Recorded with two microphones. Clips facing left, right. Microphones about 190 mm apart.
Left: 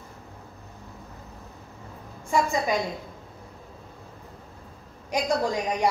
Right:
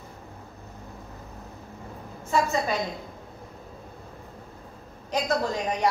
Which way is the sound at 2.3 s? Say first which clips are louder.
Even; 15° left (ahead or behind).